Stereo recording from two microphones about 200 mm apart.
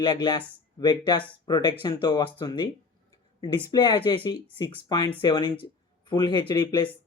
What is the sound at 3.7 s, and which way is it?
Speech, 20° left (ahead or behind).